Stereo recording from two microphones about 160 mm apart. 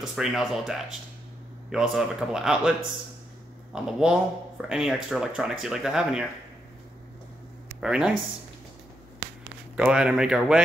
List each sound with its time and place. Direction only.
0.0 s speech: centre (ahead or behind)
3.7 s speech: 5° right (ahead or behind)
7.8 s speech: 5° right (ahead or behind)
9.2 s a sound: 90° right
9.8 s speech: 5° right (ahead or behind)